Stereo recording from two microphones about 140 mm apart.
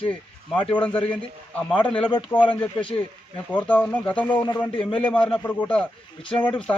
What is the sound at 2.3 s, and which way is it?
Speech, 15° left (ahead or behind).